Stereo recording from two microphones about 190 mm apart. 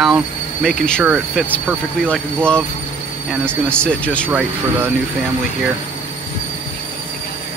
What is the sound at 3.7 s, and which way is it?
Speech, 5° left (ahead or behind).